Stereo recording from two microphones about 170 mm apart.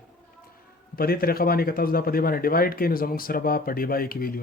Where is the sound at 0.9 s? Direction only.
60° left (ahead or behind).